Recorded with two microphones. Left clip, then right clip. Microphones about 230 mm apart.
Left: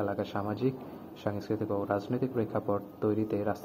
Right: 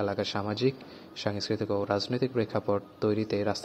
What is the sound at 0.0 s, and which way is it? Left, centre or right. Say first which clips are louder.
A man's voice: right 2 dB; right.